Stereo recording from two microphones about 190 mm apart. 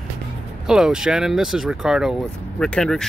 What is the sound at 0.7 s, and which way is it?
Speech, 5° right (ahead or behind).